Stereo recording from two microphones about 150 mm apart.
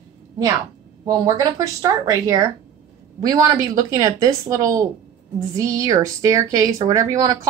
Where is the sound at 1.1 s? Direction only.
20° right (ahead or behind).